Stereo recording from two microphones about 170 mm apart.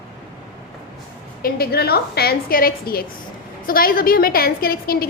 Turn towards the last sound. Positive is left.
turn(degrees=60)  # may be behind; listen again after turning